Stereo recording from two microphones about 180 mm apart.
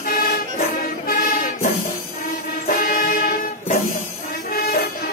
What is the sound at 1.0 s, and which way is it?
Music, 50° left (ahead or behind).